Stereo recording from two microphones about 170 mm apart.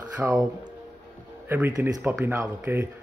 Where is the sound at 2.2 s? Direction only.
10° right (ahead or behind).